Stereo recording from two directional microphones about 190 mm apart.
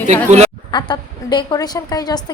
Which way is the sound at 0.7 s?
25° left (ahead or behind).